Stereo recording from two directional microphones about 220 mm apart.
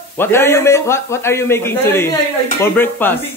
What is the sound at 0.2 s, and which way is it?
A man's voice, 10° left (ahead or behind).